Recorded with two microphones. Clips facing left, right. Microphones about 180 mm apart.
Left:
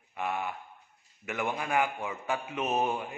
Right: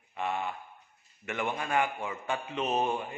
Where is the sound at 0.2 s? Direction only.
5° left (ahead or behind).